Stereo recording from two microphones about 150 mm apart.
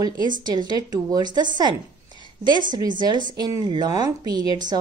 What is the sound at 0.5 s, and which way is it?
A woman's voice, 30° right (ahead or behind).